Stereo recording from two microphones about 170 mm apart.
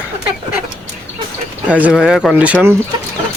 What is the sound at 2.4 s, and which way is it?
Speech, 10° right (ahead or behind).